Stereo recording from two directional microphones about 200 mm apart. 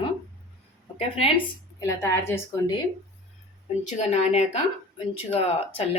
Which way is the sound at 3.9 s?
35° left (ahead or behind).